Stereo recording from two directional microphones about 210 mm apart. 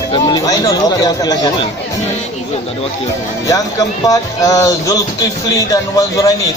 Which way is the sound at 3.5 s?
15° left (ahead or behind).